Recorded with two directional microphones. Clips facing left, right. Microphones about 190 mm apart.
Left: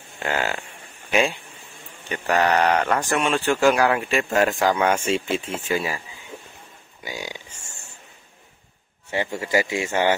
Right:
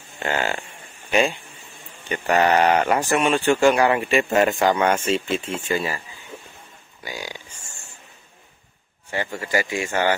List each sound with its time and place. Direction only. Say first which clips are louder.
0.2 s speech: right 1 dB; centre (ahead or behind)
2.0 s speech: right 2 dB; centre (ahead or behind)
7.0 s burping: even; 20° left (ahead or behind)
9.1 s speech: left 2 dB; 20° left (ahead or behind)